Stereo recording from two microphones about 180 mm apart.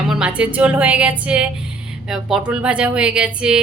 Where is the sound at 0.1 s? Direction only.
5° right (ahead or behind).